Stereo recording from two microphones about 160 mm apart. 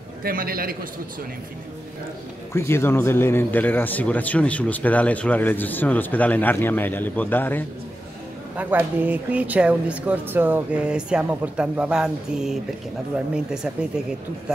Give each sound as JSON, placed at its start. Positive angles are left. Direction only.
{"t": 0.2, "sound": "a man's voice", "side_deg": -65}
{"t": 2.5, "sound": "speech", "side_deg": 15}
{"t": 8.5, "sound": "speech", "side_deg": -10}